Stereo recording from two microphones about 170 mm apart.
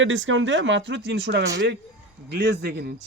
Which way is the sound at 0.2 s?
90° right.